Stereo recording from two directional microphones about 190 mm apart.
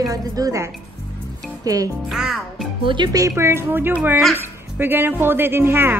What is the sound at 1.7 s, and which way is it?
Speech, 20° right (ahead or behind).